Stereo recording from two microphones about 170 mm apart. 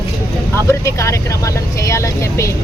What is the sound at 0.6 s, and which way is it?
Speech, 15° left (ahead or behind).